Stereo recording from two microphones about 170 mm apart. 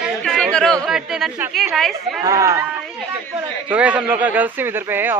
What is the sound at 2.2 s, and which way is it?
Speech, 20° right (ahead or behind).